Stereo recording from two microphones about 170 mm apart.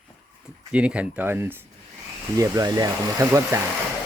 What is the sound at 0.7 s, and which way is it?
Speech, 5° right (ahead or behind).